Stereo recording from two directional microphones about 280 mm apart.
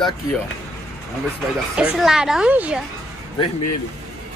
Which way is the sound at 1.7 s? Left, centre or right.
Centre.